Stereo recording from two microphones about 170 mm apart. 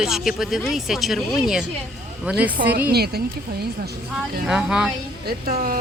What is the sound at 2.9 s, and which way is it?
Speech, 70° right (ahead or behind).